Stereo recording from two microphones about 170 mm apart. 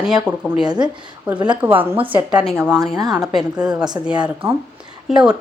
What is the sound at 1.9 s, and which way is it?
Speech, 30° right (ahead or behind).